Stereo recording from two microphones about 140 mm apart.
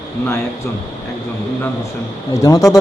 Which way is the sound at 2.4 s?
25° left (ahead or behind).